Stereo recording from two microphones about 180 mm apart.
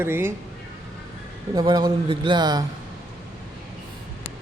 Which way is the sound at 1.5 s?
20° right (ahead or behind).